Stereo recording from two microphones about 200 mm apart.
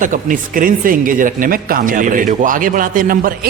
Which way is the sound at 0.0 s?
40° right (ahead or behind).